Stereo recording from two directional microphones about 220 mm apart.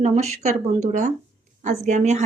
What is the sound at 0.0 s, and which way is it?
Speech, 30° right (ahead or behind).